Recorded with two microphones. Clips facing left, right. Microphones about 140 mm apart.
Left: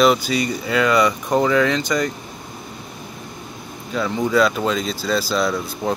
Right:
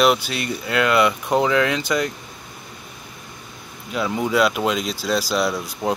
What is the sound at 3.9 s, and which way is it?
Speech, 10° right (ahead or behind).